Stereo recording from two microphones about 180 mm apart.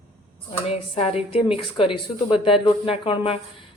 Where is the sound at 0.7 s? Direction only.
35° left (ahead or behind).